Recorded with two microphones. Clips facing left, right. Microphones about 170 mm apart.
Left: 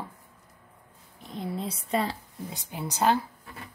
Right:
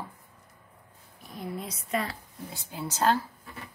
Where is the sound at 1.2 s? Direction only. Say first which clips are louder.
Left 3 dB; 25° left (ahead or behind).